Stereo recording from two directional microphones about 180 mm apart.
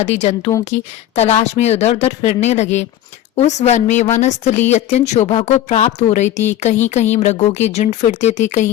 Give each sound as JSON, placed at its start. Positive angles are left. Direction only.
{"t": 0.0, "sound": "a woman's voice", "side_deg": 40}